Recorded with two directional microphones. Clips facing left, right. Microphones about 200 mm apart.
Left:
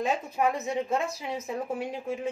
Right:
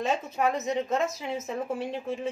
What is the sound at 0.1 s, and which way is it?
A woman's voice, 15° left (ahead or behind).